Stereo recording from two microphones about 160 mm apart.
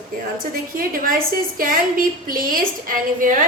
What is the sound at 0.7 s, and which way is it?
A woman's voice, 60° right (ahead or behind).